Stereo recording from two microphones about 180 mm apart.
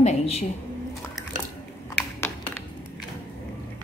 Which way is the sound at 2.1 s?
15° left (ahead or behind).